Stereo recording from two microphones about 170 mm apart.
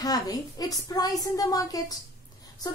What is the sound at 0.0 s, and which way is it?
A woman's voice, 20° left (ahead or behind).